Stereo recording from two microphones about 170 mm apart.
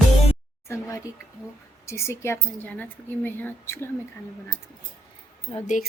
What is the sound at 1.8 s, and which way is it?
A woman's voice, 15° left (ahead or behind).